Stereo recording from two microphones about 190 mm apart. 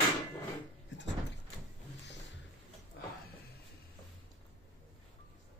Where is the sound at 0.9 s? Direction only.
70° left (ahead or behind).